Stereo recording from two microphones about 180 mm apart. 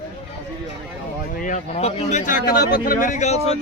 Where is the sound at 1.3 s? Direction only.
45° left (ahead or behind).